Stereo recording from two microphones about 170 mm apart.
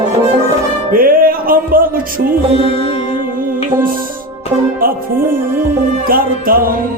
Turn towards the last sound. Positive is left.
turn(degrees=-55)  # may be behind; listen again after turning